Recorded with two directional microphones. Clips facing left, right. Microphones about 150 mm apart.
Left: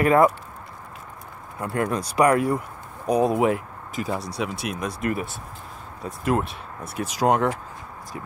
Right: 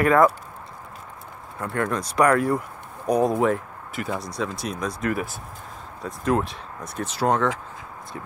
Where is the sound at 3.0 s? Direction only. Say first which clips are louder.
Even; 10° left (ahead or behind).